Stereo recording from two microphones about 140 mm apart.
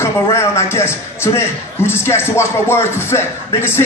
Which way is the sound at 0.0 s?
20° left (ahead or behind).